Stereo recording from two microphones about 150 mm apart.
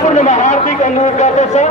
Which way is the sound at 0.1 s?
50° left (ahead or behind).